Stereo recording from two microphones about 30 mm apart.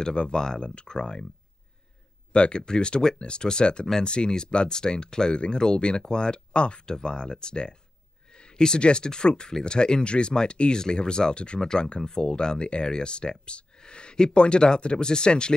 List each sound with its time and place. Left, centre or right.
0.0 s speech: left
2.3 s speech: left
8.3 s a sound: left
8.6 s speech: left